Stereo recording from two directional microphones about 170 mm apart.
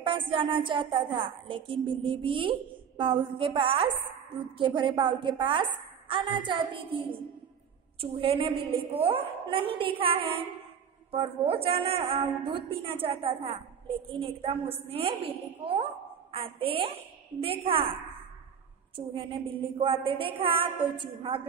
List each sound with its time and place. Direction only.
0.0 s a woman's voice: 30° right (ahead or behind)
18.9 s a woman's voice: 30° right (ahead or behind)